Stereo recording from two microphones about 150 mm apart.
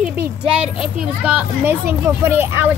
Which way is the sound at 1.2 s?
10° right (ahead or behind).